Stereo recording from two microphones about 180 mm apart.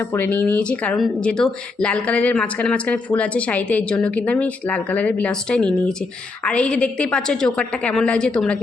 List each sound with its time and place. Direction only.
0.1 s a woman's voice: 10° left (ahead or behind)